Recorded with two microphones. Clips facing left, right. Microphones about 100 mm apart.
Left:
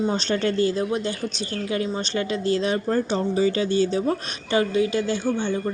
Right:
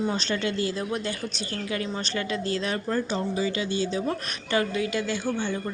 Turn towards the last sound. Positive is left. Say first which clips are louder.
# left 4 dB
turn(degrees=25)  # may be behind; listen again after turning